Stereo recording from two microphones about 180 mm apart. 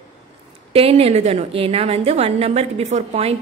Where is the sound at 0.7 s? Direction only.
30° right (ahead or behind).